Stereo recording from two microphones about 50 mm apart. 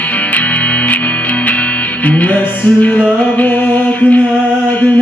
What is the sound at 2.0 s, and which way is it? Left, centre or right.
Music, left.